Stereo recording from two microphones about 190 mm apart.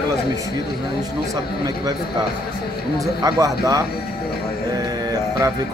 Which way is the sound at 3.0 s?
20° right (ahead or behind).